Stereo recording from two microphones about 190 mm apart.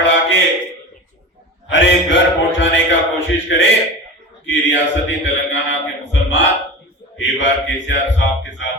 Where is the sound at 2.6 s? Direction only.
75° left (ahead or behind).